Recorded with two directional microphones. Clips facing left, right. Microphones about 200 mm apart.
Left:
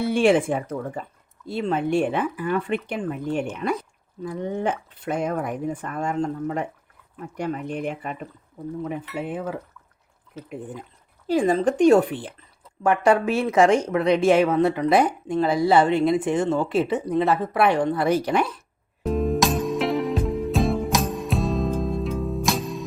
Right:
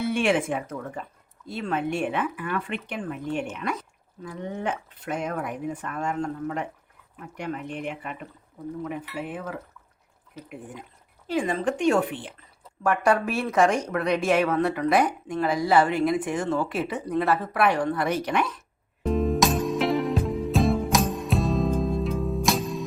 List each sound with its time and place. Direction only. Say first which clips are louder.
0.0 s speech: left 5 dB; 35° left (ahead or behind)
8.8 s speech: left 3 dB; 25° left (ahead or behind)
11.3 s speech: left 5 dB; 35° left (ahead or behind)
12.8 s speech: left 4 dB; 25° left (ahead or behind)
19.0 s music: left 1 dB; centre (ahead or behind)